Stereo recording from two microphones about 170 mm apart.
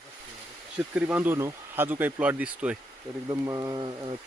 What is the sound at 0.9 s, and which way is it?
Speech, 10° right (ahead or behind).